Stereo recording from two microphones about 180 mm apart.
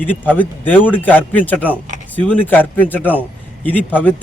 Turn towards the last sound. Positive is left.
turn(degrees=10)  # may be behind; listen again after turning